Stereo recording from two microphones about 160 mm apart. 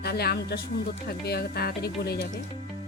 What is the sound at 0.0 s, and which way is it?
Speech, 75° left (ahead or behind).